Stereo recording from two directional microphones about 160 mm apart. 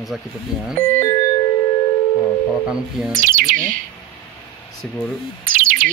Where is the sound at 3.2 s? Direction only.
60° right (ahead or behind).